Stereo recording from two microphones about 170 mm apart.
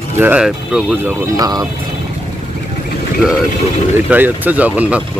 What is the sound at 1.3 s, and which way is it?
Speech, 20° right (ahead or behind).